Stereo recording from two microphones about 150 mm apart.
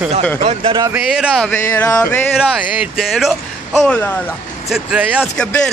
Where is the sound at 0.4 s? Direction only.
40° right (ahead or behind).